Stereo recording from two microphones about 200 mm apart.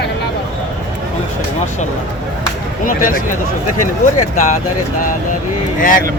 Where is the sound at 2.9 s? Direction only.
45° left (ahead or behind).